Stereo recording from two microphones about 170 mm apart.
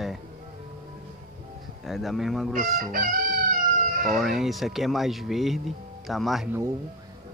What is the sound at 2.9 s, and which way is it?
Chicken, 55° right (ahead or behind).